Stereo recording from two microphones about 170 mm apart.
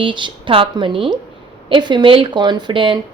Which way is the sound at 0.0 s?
30° right (ahead or behind).